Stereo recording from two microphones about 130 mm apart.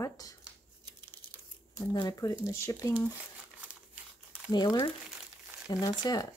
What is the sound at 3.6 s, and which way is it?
Crumpling, 10° right (ahead or behind).